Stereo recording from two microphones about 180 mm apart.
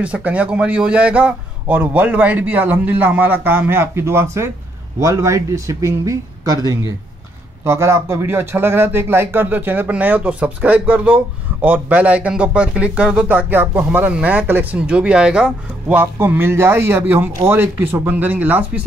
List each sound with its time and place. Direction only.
0.0 s speech: 5° right (ahead or behind)